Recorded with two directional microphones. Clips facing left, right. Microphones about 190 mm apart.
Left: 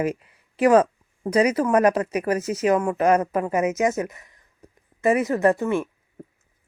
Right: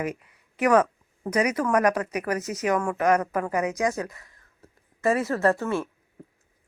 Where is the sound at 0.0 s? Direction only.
30° left (ahead or behind).